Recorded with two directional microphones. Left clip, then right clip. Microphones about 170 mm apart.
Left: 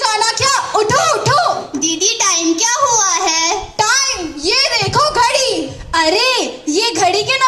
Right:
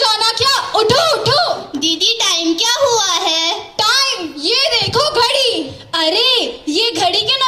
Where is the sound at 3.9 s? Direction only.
45° right (ahead or behind).